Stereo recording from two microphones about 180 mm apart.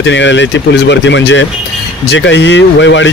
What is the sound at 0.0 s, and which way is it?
Speech, 90° left.